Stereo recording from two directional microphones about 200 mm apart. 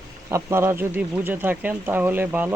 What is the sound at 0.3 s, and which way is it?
Speech, 15° right (ahead or behind).